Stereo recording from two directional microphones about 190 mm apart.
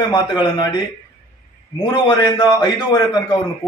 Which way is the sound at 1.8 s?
20° left (ahead or behind).